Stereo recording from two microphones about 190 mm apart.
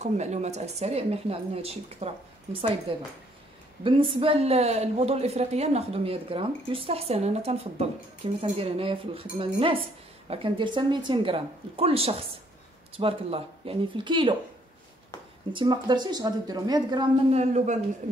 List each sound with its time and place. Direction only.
0.0 s a woman's voice: 35° right (ahead or behind)
15.5 s speech: 25° right (ahead or behind)
17.3 s a woman's voice: 35° right (ahead or behind)